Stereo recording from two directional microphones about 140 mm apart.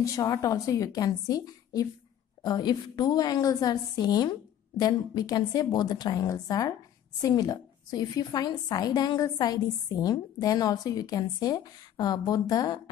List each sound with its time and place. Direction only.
0.0 s a woman's voice: 25° left (ahead or behind)